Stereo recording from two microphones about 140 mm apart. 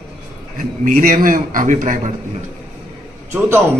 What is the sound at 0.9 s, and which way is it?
A man's voice, 70° right (ahead or behind).